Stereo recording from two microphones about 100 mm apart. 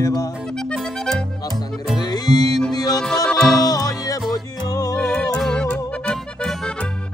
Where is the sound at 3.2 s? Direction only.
5° left (ahead or behind).